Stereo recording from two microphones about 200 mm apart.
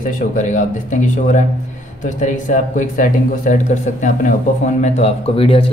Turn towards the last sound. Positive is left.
turn(degrees=25)  # may be behind; listen again after turning